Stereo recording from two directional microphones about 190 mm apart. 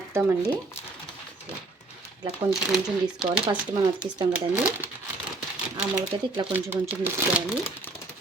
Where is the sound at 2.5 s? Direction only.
Centre (ahead or behind).